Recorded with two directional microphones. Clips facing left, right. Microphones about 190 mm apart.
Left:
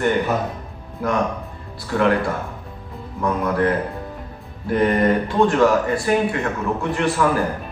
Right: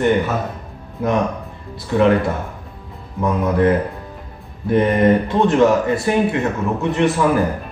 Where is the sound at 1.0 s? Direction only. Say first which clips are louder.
Right 3 dB; 20° right (ahead or behind).